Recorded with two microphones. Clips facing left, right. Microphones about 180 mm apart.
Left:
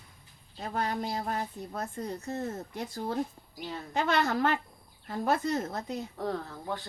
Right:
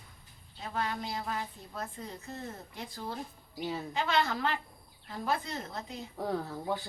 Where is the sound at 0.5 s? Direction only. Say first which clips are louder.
Left 3 dB; 40° left (ahead or behind).